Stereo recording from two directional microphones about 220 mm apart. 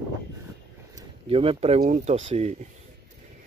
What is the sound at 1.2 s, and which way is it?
Speech, 25° right (ahead or behind).